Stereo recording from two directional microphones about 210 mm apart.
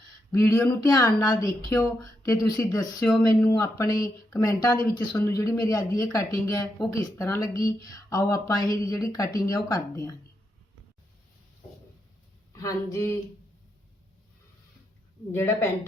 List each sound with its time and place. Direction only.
0.3 s speech: 15° left (ahead or behind)
12.5 s speech: 15° left (ahead or behind)
15.3 s speech: 10° left (ahead or behind)